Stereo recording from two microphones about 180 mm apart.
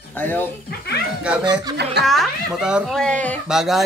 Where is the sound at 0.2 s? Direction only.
10° left (ahead or behind).